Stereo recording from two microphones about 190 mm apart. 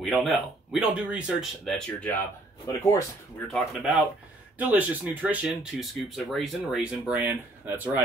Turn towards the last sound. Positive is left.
turn(degrees=-10)  # may be behind; listen again after turning